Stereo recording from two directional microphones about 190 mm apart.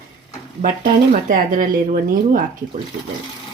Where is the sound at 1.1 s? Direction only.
45° right (ahead or behind).